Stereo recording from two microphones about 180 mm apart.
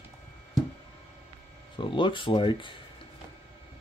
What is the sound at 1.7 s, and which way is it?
Speech, 25° left (ahead or behind).